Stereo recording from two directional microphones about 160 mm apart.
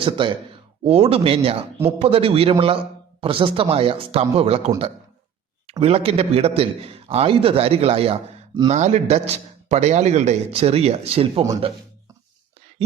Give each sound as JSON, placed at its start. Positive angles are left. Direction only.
{"t": 0.2, "sound": "a man's voice", "side_deg": -30}
{"t": 5.8, "sound": "a man's voice", "side_deg": -40}
{"t": 8.7, "sound": "a man's voice", "side_deg": -45}